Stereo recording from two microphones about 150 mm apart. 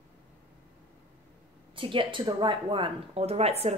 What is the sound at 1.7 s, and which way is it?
A woman's voice, 35° right (ahead or behind).